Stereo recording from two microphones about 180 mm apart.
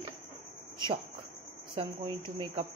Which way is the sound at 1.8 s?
25° right (ahead or behind).